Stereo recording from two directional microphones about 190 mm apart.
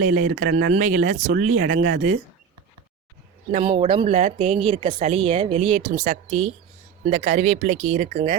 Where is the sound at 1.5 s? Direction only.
90° right.